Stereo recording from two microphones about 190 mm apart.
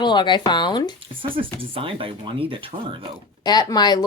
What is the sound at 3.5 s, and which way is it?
Speech, 20° left (ahead or behind).